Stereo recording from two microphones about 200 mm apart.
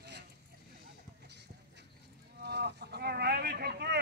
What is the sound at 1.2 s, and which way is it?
Clip-clop, 60° right (ahead or behind).